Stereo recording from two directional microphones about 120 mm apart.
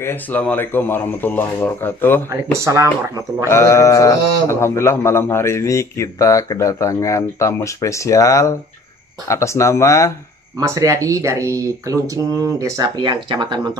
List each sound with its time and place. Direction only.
0.0 s speech: 15° left (ahead or behind)
2.2 s speech: 25° right (ahead or behind)
3.4 s speech: 20° left (ahead or behind)
10.6 s speech: 25° right (ahead or behind)